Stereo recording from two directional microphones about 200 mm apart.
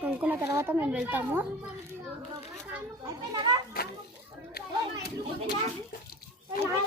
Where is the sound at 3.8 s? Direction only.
50° left (ahead or behind).